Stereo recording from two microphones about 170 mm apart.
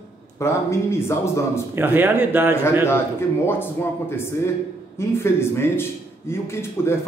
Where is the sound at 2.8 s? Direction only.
15° left (ahead or behind).